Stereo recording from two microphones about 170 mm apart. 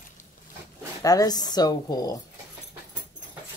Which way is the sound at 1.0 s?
20° left (ahead or behind).